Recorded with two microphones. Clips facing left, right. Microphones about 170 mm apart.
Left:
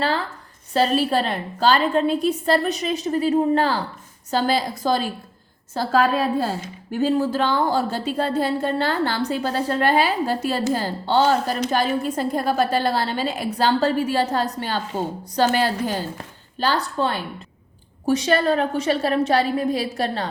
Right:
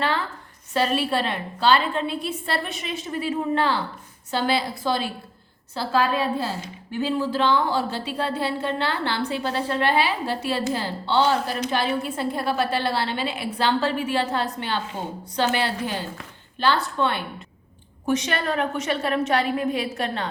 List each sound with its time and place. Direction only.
0.7 s a woman's voice: 35° left (ahead or behind)